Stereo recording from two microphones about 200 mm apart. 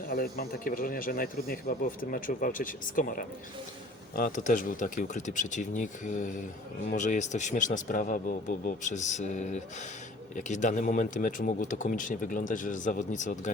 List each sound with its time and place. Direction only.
0.1 s speech: 45° left (ahead or behind)